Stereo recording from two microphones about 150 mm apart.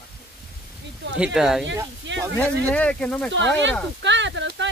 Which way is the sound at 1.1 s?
5° right (ahead or behind).